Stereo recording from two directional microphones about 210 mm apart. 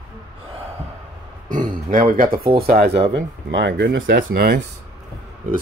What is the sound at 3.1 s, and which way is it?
Speech, 60° right (ahead or behind).